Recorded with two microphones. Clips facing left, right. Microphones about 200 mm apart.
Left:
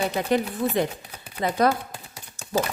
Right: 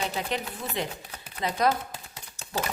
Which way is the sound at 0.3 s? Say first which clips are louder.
Left 9 dB; 45° left (ahead or behind).